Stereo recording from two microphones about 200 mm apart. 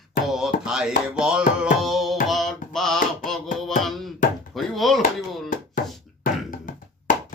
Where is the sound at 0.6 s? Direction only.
5° right (ahead or behind).